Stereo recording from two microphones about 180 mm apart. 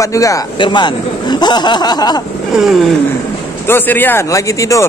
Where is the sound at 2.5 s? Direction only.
Centre (ahead or behind).